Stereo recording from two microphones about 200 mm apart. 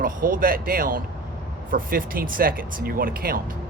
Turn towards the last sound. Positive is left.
turn(degrees=-45)  # may be behind; listen again after turning